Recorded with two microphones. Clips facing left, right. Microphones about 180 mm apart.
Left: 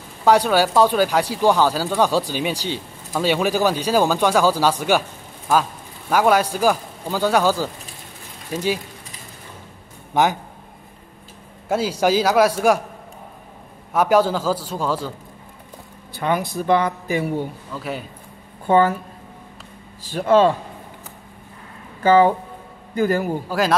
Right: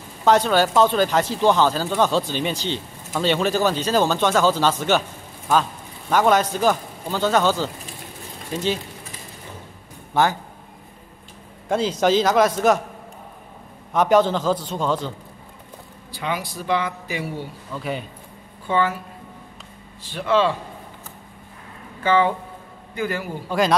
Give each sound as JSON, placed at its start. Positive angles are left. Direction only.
{"t": 0.2, "sound": "a man's voice", "side_deg": 10}
{"t": 10.1, "sound": "speech", "side_deg": 15}
{"t": 11.7, "sound": "speech", "side_deg": 10}
{"t": 13.9, "sound": "speech", "side_deg": 5}
{"t": 16.2, "sound": "speech", "side_deg": 50}
{"t": 17.7, "sound": "speech", "side_deg": 0}
{"t": 18.7, "sound": "speech", "side_deg": 45}
{"t": 20.1, "sound": "speech", "side_deg": 45}
{"t": 22.0, "sound": "speech", "side_deg": 40}